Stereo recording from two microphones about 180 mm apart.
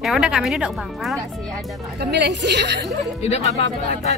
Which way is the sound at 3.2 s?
35° left (ahead or behind).